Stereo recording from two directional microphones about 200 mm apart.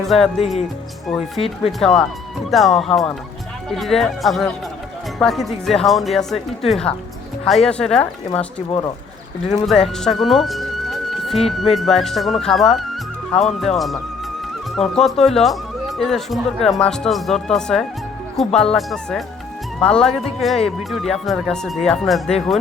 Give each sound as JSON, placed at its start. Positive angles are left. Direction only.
{"t": 0.0, "sound": "speech", "side_deg": 0}
{"t": 1.4, "sound": "speech", "side_deg": 25}
{"t": 1.8, "sound": "speech", "side_deg": 0}
{"t": 9.6, "sound": "speech", "side_deg": 0}